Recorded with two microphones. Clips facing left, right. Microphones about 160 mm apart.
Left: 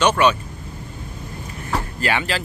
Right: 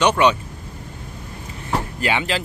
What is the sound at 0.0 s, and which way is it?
Speech, 15° right (ahead or behind).